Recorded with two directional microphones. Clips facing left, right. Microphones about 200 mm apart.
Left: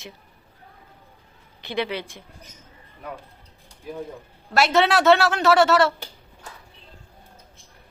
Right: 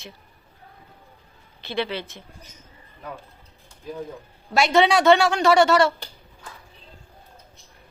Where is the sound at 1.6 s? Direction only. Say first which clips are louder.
Even; 15° left (ahead or behind).